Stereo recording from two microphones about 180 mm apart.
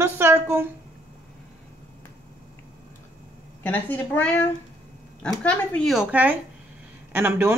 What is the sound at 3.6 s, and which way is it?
A woman's voice, 10° left (ahead or behind).